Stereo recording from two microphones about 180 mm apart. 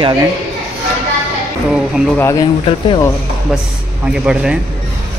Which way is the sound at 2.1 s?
15° left (ahead or behind).